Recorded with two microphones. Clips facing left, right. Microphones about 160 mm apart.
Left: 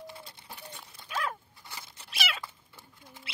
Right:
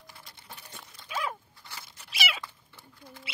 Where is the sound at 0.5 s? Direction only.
10° left (ahead or behind).